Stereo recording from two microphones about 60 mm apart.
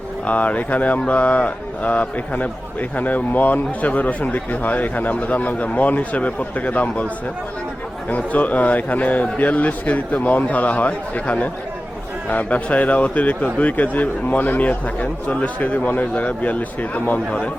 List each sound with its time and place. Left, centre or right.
0.3 s speech: left
8.1 s speech: left